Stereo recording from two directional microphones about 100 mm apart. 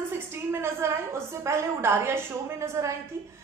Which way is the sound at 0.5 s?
25° right (ahead or behind).